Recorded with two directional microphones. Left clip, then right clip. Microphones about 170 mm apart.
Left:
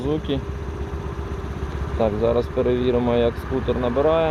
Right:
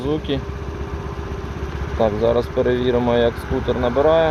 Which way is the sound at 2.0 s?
Centre (ahead or behind).